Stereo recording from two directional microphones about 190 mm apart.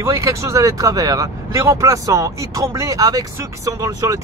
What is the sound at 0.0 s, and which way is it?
Speech, 15° right (ahead or behind).